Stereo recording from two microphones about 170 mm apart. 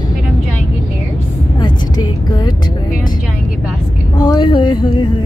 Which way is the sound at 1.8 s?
25° left (ahead or behind).